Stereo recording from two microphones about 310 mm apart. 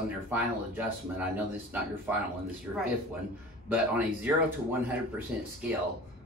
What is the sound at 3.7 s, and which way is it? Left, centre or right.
Speech, centre.